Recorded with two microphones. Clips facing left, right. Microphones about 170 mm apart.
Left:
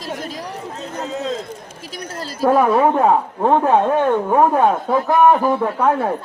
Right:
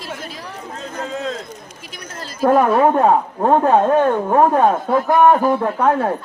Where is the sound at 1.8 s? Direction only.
40° left (ahead or behind).